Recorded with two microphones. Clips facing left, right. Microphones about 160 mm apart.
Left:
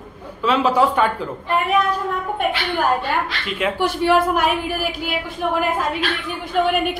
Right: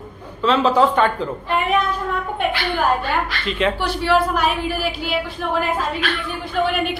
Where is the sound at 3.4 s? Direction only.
10° left (ahead or behind).